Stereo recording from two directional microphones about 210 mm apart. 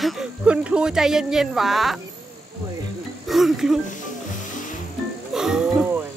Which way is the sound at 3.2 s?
Centre (ahead or behind).